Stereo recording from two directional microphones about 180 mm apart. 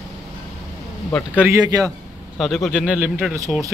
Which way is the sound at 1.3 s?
10° right (ahead or behind).